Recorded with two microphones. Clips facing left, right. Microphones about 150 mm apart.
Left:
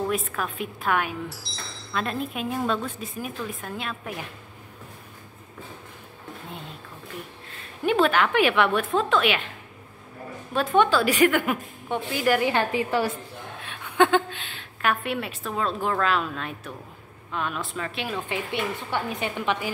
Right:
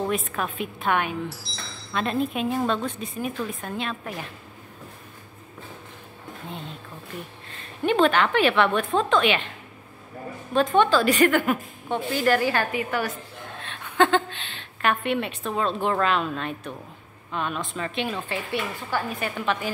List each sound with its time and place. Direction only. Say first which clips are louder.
0.1 s a woman's voice: right 1 dB; centre (ahead or behind)
7.8 s a woman's voice: right 1 dB; 5° left (ahead or behind)
10.5 s a woman's voice: right 1 dB; 10° left (ahead or behind); by 13.2 s 25° left (ahead or behind)
13.6 s a woman's voice: even; 10° left (ahead or behind)
18.3 s a woman's voice: left 1 dB; 20° left (ahead or behind)